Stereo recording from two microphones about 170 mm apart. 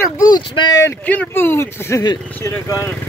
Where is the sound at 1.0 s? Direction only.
10° left (ahead or behind).